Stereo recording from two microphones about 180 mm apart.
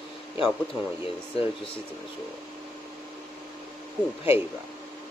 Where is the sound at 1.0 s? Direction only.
30° left (ahead or behind).